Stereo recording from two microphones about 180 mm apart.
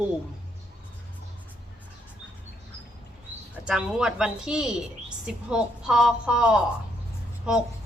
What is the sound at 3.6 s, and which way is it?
A woman's voice, 5° right (ahead or behind).